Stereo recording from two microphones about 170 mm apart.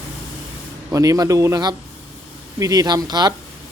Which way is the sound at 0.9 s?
20° right (ahead or behind).